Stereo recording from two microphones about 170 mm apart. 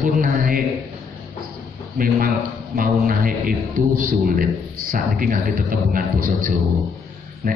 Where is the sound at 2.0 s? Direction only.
55° right (ahead or behind).